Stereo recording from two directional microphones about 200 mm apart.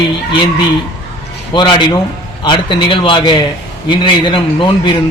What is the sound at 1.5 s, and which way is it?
Speech, 20° left (ahead or behind).